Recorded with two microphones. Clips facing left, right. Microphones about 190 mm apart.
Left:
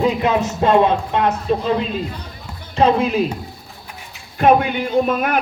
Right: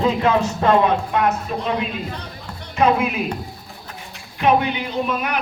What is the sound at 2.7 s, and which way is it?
Speech, 30° left (ahead or behind).